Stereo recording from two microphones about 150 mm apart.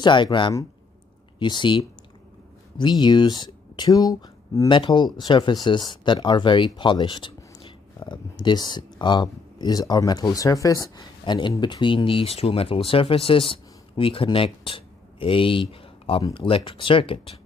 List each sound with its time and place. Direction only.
0.0 s speech: 30° left (ahead or behind)